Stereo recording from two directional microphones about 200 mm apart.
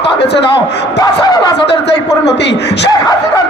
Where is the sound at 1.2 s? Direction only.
20° left (ahead or behind).